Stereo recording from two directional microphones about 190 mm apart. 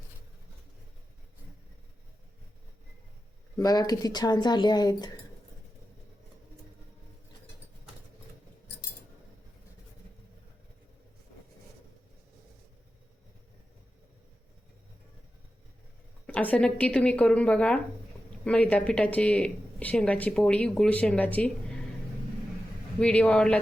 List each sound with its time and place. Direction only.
3.6 s speech: 20° left (ahead or behind)
16.2 s speech: 10° left (ahead or behind)
23.0 s a man's voice: 5° left (ahead or behind)